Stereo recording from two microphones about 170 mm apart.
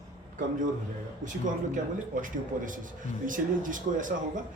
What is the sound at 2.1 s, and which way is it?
Speech, 50° right (ahead or behind).